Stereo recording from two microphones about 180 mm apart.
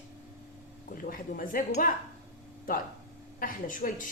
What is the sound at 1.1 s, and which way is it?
Speech, 50° left (ahead or behind).